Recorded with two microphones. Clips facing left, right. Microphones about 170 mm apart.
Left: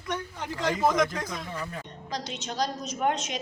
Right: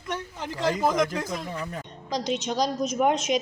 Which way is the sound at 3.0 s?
15° right (ahead or behind).